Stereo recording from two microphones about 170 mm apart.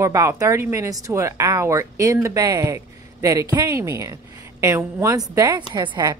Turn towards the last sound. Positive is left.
turn(degrees=-25)  # may be behind; listen again after turning